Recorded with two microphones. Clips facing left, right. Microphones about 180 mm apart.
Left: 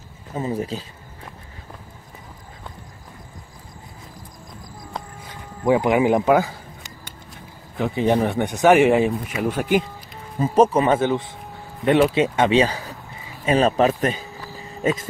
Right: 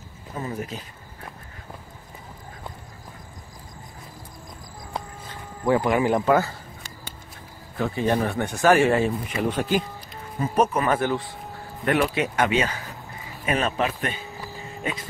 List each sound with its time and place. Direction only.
0.6 s speech: 30° left (ahead or behind)
5.2 s speech: 15° left (ahead or behind)
7.7 s speech: 20° left (ahead or behind)
9.1 s speech: 5° left (ahead or behind)
10.4 s speech: 30° left (ahead or behind)